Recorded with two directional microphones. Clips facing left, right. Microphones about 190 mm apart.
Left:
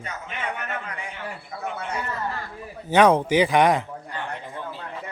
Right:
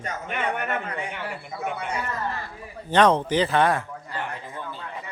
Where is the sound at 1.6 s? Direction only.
15° right (ahead or behind).